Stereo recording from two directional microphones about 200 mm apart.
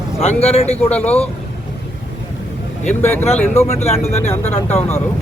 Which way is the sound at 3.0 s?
10° left (ahead or behind).